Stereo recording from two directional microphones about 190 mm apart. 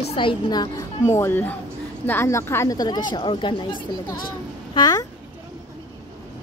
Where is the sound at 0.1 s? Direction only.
25° left (ahead or behind).